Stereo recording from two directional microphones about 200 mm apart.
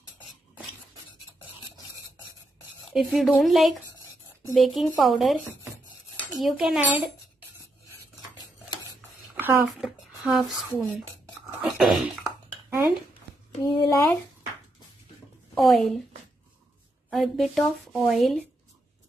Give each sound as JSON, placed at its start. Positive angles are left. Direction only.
{"t": 2.9, "sound": "a woman's voice", "side_deg": 0}
{"t": 9.3, "sound": "speech", "side_deg": -10}
{"t": 11.6, "sound": "cough", "side_deg": 0}
{"t": 13.7, "sound": "speech", "side_deg": 20}
{"t": 15.5, "sound": "a woman's voice", "side_deg": 0}
{"t": 17.1, "sound": "a woman's voice", "side_deg": 0}